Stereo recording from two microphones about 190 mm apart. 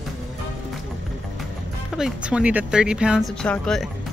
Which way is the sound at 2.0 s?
5° right (ahead or behind).